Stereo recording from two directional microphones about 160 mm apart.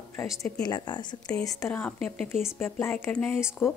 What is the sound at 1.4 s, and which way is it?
Speech, 15° left (ahead or behind).